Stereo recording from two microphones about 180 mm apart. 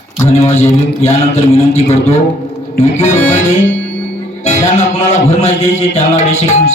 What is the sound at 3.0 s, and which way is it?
Music, 40° left (ahead or behind).